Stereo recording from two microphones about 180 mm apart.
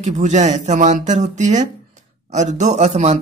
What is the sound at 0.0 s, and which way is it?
Speech, 40° right (ahead or behind).